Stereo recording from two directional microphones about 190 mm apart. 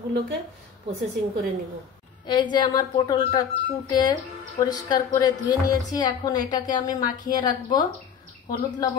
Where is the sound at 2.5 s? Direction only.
25° left (ahead or behind).